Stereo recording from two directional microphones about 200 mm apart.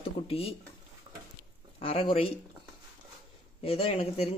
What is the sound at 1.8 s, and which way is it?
Speech, 30° left (ahead or behind).